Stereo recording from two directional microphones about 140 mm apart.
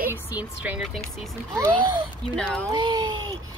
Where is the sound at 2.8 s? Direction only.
35° right (ahead or behind).